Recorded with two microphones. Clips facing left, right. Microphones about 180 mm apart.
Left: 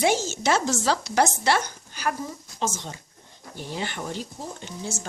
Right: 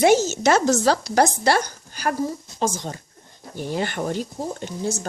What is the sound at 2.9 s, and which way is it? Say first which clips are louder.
Speech: right 6 dB; 45° right (ahead or behind).